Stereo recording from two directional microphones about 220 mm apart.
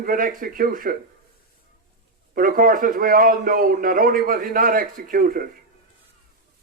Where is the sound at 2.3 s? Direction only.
40° right (ahead or behind).